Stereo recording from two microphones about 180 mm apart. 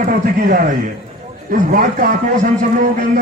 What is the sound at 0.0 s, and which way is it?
A man's voice, 50° right (ahead or behind).